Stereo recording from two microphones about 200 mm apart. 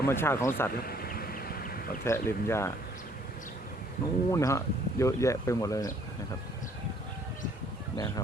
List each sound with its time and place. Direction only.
0.0 s speech: 10° left (ahead or behind)
0.9 s a sound: 50° left (ahead or behind)
2.0 s speech: 15° left (ahead or behind)
4.3 s speech: 15° left (ahead or behind)
7.9 s speech: 20° left (ahead or behind)